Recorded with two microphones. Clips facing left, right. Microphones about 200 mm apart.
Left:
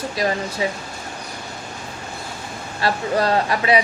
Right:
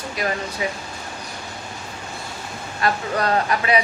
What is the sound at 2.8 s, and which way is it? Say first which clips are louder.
Speech: left 2 dB; 30° left (ahead or behind).